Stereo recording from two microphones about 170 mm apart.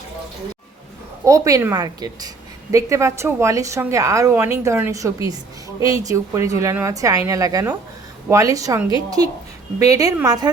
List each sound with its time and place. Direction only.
1.2 s a woman's voice: 20° right (ahead or behind)